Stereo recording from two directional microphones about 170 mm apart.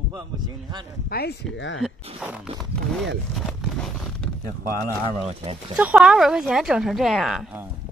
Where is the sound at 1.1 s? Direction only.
70° left (ahead or behind).